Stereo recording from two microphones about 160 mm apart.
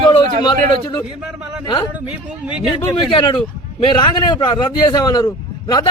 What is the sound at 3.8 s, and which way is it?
A man's voice, 30° left (ahead or behind).